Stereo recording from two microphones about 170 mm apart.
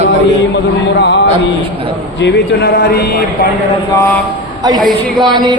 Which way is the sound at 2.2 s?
80° left.